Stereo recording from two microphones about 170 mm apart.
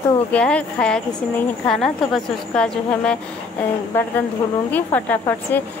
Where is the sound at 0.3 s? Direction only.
5° left (ahead or behind).